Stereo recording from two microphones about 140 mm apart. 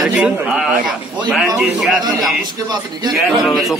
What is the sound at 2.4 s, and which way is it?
Speech, 30° right (ahead or behind).